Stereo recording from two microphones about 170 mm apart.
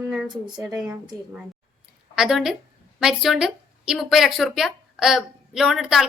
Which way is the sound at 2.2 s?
Centre (ahead or behind).